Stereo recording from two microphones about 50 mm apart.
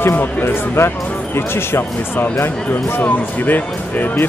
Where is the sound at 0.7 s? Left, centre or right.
Left.